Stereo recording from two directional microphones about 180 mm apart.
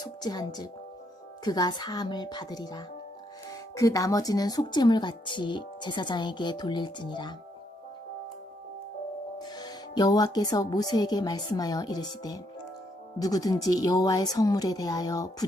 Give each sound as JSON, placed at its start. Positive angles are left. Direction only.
{"t": 0.0, "sound": "speech", "side_deg": 20}
{"t": 9.4, "sound": "speech", "side_deg": 25}